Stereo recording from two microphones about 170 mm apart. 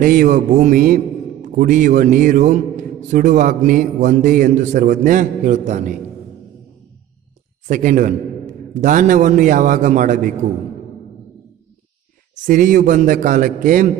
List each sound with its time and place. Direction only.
0.0 s a man's voice: 50° right (ahead or behind)
7.6 s a man's voice: 45° right (ahead or behind)
12.4 s a man's voice: 50° right (ahead or behind)